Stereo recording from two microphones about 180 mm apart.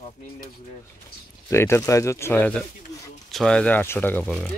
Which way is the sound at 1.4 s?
15° left (ahead or behind).